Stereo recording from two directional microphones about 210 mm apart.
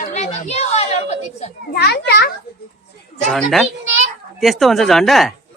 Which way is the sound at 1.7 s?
50° left (ahead or behind).